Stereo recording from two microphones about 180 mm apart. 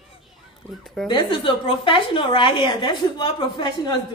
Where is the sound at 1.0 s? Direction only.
25° left (ahead or behind).